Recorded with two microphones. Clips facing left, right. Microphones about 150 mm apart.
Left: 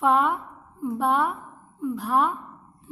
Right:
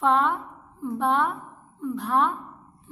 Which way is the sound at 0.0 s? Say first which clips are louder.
Left 1 dB; 10° left (ahead or behind).